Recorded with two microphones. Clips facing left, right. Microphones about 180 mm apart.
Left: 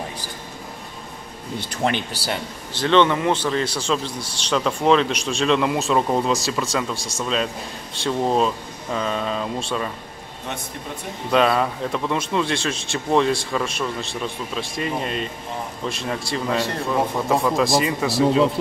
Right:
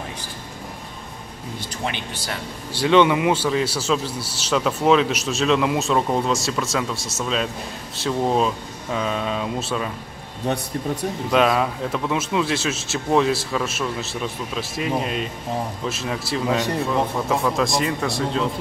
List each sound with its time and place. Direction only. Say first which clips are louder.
2.7 s a man's voice: right 1 dB; 10° right (ahead or behind)
10.4 s speech: right 8 dB; 40° right (ahead or behind)
11.3 s a man's voice: left 1 dB; 5° right (ahead or behind)